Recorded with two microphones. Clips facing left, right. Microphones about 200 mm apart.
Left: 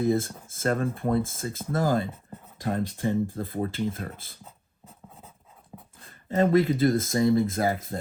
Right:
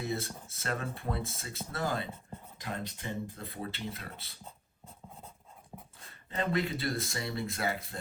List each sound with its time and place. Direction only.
0.0 s speech: 50° left (ahead or behind)
5.7 s a sound: 5° right (ahead or behind)
6.2 s speech: 45° left (ahead or behind)